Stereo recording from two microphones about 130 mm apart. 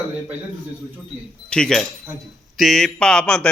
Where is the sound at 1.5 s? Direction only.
5° left (ahead or behind).